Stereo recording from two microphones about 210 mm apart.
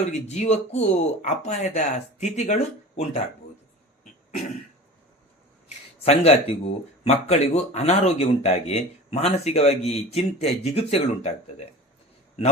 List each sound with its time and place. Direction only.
0.0 s speech: 30° left (ahead or behind)
5.6 s a sound: 30° left (ahead or behind)
7.0 s speech: 30° left (ahead or behind)